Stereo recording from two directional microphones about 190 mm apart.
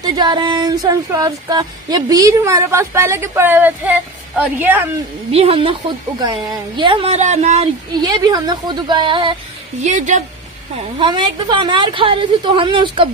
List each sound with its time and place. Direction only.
0.0 s a sound: 20° right (ahead or behind)
5.3 s a woman's voice: 30° right (ahead or behind)
8.0 s a woman's voice: 20° right (ahead or behind)
9.8 s a woman's voice: 40° right (ahead or behind)
10.8 s a woman's voice: 25° right (ahead or behind)